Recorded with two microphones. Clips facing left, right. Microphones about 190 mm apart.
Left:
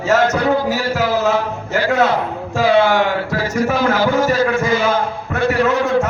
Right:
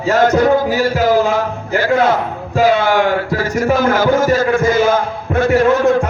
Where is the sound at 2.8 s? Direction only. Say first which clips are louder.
Right 2 dB; 45° right (ahead or behind).